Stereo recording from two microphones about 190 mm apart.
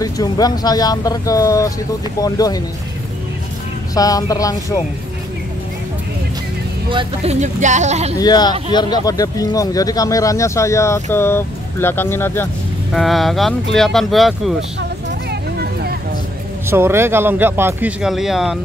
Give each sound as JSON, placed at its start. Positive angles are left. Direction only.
{"t": 0.0, "sound": "speech", "side_deg": 20}
{"t": 3.9, "sound": "speech", "side_deg": 20}
{"t": 6.9, "sound": "speech", "side_deg": -25}
{"t": 7.3, "sound": "speech", "side_deg": -40}
{"t": 8.2, "sound": "speech", "side_deg": 20}
{"t": 12.9, "sound": "speech", "side_deg": 0}
{"t": 14.8, "sound": "vehicle", "side_deg": -65}
{"t": 16.6, "sound": "speech", "side_deg": -10}